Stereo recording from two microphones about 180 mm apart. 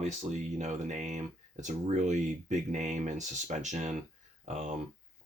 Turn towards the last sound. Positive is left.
turn(degrees=-40)  # may be behind; listen again after turning